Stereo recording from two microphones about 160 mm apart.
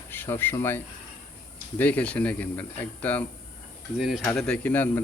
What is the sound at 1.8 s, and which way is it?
Speech, 10° left (ahead or behind).